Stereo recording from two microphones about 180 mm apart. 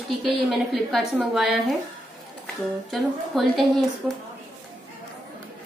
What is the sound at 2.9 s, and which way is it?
A woman's voice, centre (ahead or behind).